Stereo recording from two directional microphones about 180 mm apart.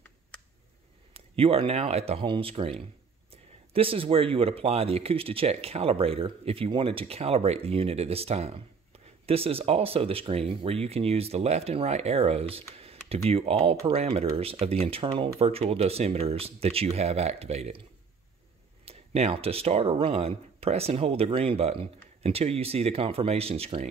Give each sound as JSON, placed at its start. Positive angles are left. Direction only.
{"t": 1.1, "sound": "speech", "side_deg": -30}
{"t": 12.7, "sound": "computer keyboard", "side_deg": -35}
{"t": 13.3, "sound": "speech", "side_deg": -30}
{"t": 18.9, "sound": "speech", "side_deg": -35}